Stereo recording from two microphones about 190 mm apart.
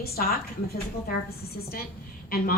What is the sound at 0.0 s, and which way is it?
A woman's voice, 55° left (ahead or behind).